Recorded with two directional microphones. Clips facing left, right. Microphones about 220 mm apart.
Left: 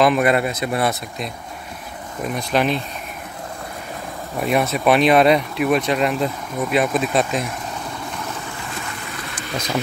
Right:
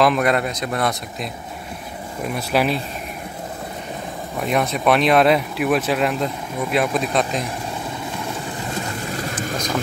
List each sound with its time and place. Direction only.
0.0 s speech: 5° left (ahead or behind)
2.3 s speech: 5° right (ahead or behind)
4.4 s speech: 5° left (ahead or behind)
8.7 s boat: 35° right (ahead or behind)